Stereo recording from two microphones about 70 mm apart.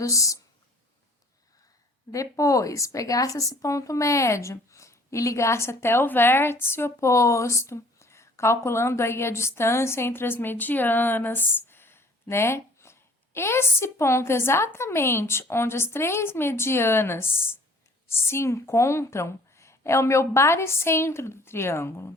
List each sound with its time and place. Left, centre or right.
0.0 s speech: left
2.1 s a woman's voice: left